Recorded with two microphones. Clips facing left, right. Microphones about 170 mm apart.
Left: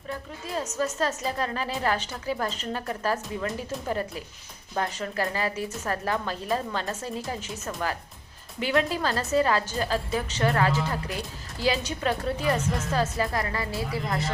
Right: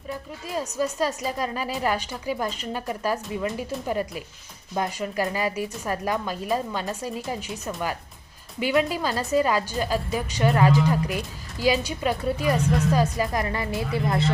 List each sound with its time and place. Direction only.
0.1 s a woman's voice: 10° right (ahead or behind)
8.6 s a woman's voice: 5° right (ahead or behind); by 14.3 s 25° right (ahead or behind)